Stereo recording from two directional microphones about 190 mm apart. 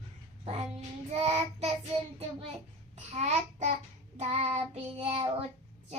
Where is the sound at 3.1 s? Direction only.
35° right (ahead or behind).